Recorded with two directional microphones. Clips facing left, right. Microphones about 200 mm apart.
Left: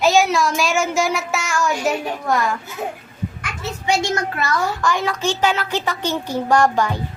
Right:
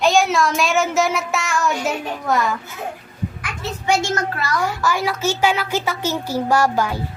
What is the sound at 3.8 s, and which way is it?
Speech, 20° left (ahead or behind).